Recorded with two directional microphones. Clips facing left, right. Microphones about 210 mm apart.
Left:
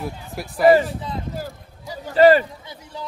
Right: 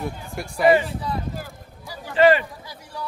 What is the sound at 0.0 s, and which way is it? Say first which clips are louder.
Speech: even; centre (ahead or behind).